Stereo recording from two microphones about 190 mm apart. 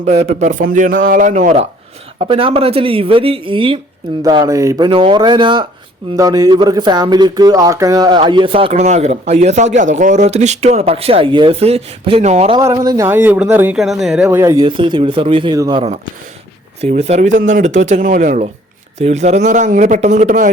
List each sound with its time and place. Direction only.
0.0 s speech: 35° right (ahead or behind)
2.1 s speech: 30° right (ahead or behind)
12.5 s speech: 20° right (ahead or behind); by 14.3 s centre (ahead or behind)
14.3 s speech: 15° right (ahead or behind)
16.8 s speech: 35° right (ahead or behind)